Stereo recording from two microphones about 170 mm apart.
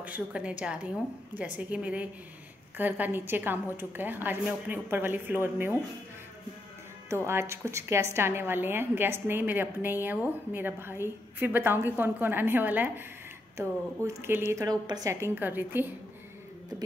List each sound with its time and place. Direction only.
0.0 s a woman's voice: 5° right (ahead or behind)
7.1 s a woman's voice: 15° right (ahead or behind)